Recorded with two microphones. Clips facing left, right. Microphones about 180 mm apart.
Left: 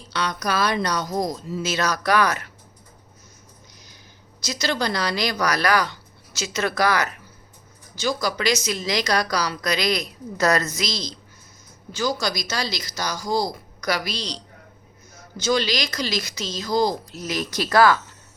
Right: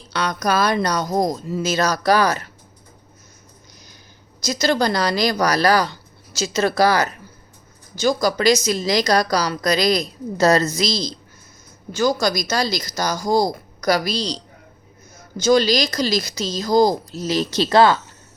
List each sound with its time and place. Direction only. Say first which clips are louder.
0.1 s speech: right 4 dB; 45° right (ahead or behind)
4.4 s a woman's voice: right 6 dB; 45° right (ahead or behind)
11.9 s a woman's voice: right 6 dB; 50° right (ahead or behind); by 18.0 s 25° right (ahead or behind)